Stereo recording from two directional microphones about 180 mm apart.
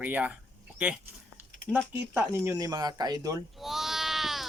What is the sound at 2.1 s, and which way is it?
Speech, 15° right (ahead or behind).